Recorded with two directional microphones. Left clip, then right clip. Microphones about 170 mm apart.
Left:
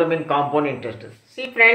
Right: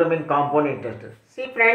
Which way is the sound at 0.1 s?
15° left (ahead or behind).